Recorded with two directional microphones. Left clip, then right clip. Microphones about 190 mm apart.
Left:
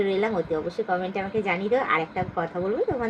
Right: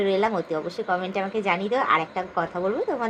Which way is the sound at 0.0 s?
25° right (ahead or behind).